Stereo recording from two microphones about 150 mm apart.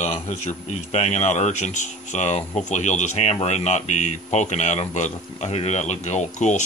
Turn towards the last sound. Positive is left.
turn(degrees=55)  # may be behind; listen again after turning